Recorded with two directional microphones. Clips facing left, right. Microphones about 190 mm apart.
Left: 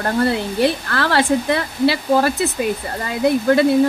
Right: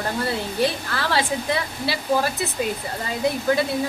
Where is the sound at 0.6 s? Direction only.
60° left (ahead or behind).